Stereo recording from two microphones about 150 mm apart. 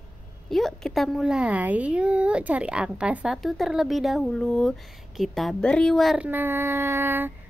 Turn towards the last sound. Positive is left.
turn(degrees=-15)  # may be behind; listen again after turning